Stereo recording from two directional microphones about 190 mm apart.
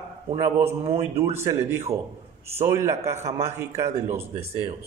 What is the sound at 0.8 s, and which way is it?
Speech, 30° right (ahead or behind).